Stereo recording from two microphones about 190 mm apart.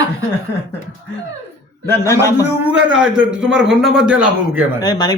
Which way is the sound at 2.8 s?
90° right.